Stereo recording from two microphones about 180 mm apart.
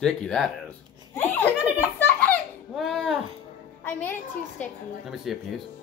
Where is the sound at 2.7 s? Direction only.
Centre (ahead or behind).